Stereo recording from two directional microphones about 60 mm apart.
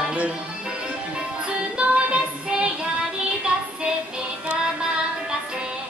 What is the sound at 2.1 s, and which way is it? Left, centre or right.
Music, centre.